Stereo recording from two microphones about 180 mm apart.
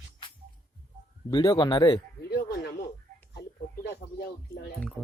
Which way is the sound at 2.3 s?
65° left (ahead or behind).